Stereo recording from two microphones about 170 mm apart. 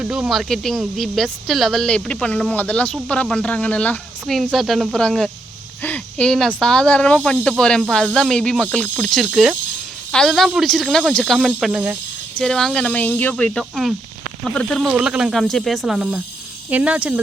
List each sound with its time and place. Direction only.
0.0 s speech: 5° right (ahead or behind)